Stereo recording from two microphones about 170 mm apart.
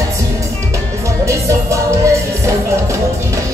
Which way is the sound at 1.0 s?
20° right (ahead or behind).